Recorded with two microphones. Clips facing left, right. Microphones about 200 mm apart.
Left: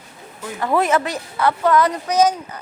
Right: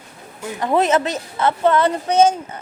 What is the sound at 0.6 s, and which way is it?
A woman's voice, 20° right (ahead or behind).